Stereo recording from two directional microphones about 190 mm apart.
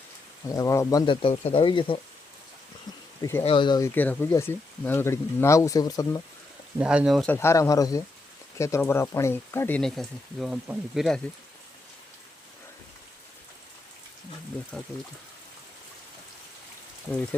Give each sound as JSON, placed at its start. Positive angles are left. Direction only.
{"t": 0.5, "sound": "speech", "side_deg": 15}
{"t": 3.2, "sound": "speech", "side_deg": 15}
{"t": 3.4, "sound": "speech", "side_deg": 25}
{"t": 6.7, "sound": "speech", "side_deg": -5}
{"t": 7.3, "sound": "speech", "side_deg": 15}